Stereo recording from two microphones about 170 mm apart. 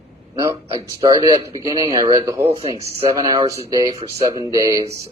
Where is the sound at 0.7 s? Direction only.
20° right (ahead or behind).